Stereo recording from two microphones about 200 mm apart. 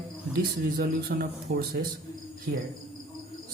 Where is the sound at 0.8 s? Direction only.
50° right (ahead or behind).